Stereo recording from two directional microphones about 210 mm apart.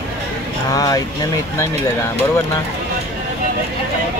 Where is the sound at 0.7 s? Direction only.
15° left (ahead or behind).